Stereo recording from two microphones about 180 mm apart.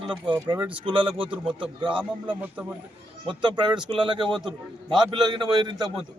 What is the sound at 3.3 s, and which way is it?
A man's voice, 25° right (ahead or behind).